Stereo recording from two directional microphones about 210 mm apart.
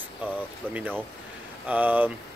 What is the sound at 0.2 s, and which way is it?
Speech, 10° right (ahead or behind).